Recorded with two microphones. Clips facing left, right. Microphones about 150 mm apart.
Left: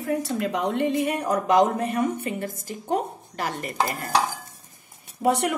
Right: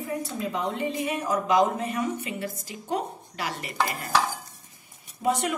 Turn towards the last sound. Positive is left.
turn(degrees=65)  # may be behind; listen again after turning